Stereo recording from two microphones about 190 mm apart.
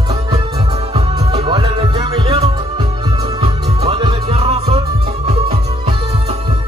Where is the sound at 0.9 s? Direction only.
25° right (ahead or behind).